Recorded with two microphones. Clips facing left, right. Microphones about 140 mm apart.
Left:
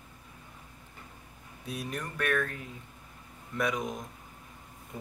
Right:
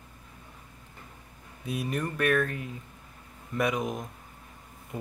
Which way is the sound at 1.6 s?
5° right (ahead or behind).